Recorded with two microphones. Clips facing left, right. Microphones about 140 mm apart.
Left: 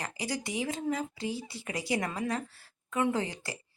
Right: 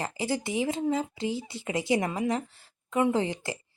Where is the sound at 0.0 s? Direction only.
30° right (ahead or behind).